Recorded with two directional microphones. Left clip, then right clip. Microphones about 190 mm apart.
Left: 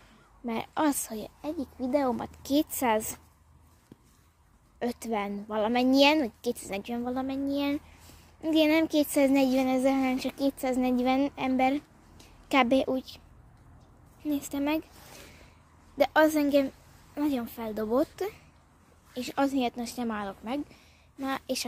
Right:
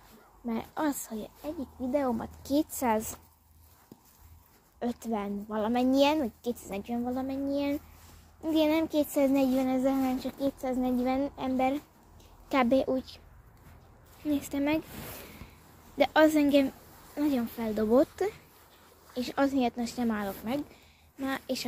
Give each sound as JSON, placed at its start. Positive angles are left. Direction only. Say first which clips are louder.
{"t": 0.5, "sound": "a woman's voice", "louder": "left 4 dB", "side_deg": 40}
{"t": 2.5, "sound": "a woman's voice", "louder": "left 2 dB", "side_deg": 25}
{"t": 4.7, "sound": "a woman's voice", "louder": "left 2 dB", "side_deg": 35}
{"t": 14.2, "sound": "speech", "louder": "even", "side_deg": 10}
{"t": 16.0, "sound": "a woman's voice", "louder": "even", "side_deg": 10}